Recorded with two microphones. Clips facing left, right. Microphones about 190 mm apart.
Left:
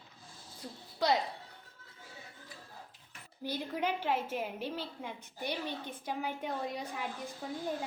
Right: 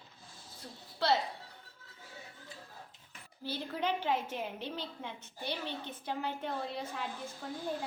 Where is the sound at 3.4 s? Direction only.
15° left (ahead or behind).